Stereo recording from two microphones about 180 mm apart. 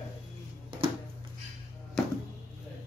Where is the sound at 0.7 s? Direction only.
30° right (ahead or behind).